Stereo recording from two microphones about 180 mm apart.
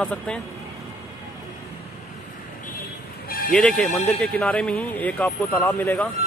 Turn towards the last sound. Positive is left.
turn(degrees=10)  # may be behind; listen again after turning